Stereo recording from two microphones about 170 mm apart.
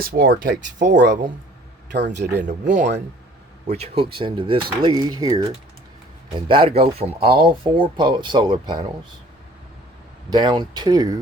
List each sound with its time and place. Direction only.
0.0 s speech: 60° right (ahead or behind)
2.1 s speech: 90° right
2.6 s speech: 45° right (ahead or behind)
3.7 s speech: 35° right (ahead or behind)
6.5 s speech: 30° right (ahead or behind)
10.2 s speech: 25° right (ahead or behind)